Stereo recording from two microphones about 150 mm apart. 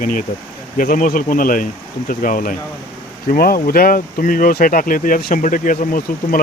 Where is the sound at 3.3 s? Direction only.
75° left (ahead or behind).